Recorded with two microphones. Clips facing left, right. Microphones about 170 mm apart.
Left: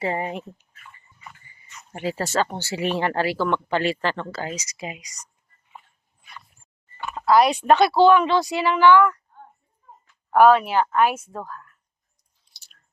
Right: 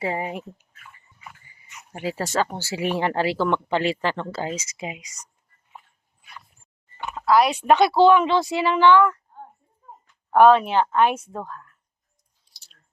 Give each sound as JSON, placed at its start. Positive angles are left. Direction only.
{"t": 0.0, "sound": "speech", "side_deg": -10}
{"t": 7.3, "sound": "speech", "side_deg": 0}
{"t": 10.1, "sound": "speech", "side_deg": 5}
{"t": 12.5, "sound": "chewing", "side_deg": -35}